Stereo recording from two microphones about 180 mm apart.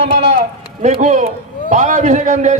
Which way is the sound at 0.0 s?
40° right (ahead or behind).